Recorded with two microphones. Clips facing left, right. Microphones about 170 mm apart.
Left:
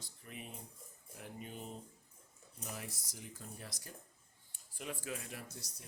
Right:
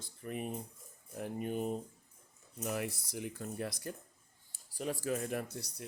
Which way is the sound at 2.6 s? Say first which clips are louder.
Right 10 dB; 65° right (ahead or behind).